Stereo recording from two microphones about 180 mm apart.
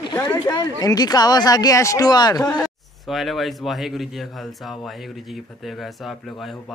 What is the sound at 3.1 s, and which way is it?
Speech, centre (ahead or behind).